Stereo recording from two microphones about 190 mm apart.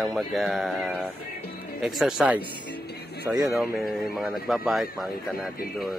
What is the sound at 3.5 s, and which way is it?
Speech, centre (ahead or behind).